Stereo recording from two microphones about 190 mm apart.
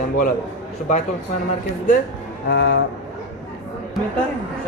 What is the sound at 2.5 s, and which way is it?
Speech, 60° left (ahead or behind).